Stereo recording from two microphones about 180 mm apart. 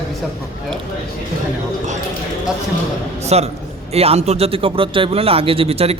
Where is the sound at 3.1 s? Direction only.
35° right (ahead or behind).